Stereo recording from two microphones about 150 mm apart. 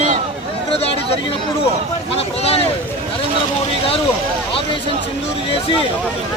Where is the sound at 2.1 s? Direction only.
40° left (ahead or behind).